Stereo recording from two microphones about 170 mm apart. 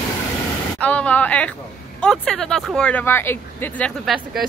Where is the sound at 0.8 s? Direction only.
5° left (ahead or behind).